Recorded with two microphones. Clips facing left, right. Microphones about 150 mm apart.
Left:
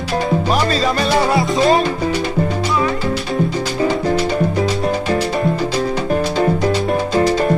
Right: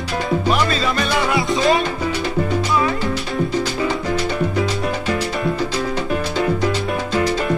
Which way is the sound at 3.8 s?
35° left (ahead or behind).